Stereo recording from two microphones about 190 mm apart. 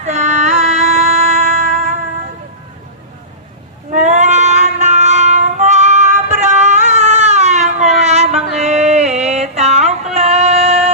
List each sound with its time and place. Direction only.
0.0 s music: 35° right (ahead or behind)
3.9 s child singing: 40° right (ahead or behind)
8.5 s a sound: 35° right (ahead or behind)
10.2 s female singing: 35° right (ahead or behind)